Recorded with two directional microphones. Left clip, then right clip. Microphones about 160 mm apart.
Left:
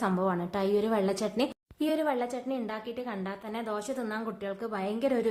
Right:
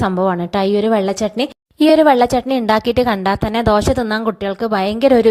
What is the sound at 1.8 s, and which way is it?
A woman's voice, 70° right (ahead or behind).